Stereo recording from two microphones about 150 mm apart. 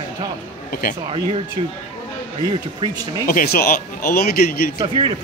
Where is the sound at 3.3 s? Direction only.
80° left.